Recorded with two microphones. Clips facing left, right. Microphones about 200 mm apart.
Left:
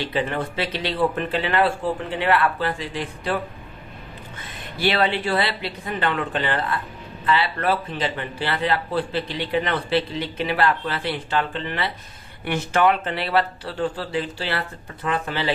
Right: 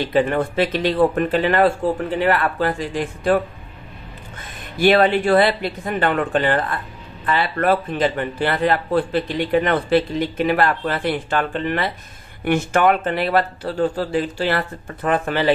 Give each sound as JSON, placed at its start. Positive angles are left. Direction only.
{"t": 0.0, "sound": "speech", "side_deg": -50}
{"t": 4.7, "sound": "speech", "side_deg": -50}